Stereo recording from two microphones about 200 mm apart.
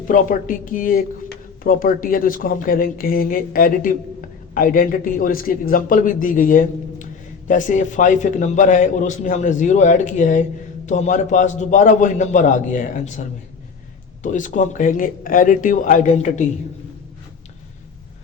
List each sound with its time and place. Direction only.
0.1 s a man's voice: 45° left (ahead or behind)